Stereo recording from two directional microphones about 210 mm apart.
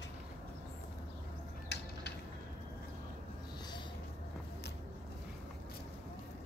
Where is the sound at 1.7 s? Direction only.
55° left (ahead or behind).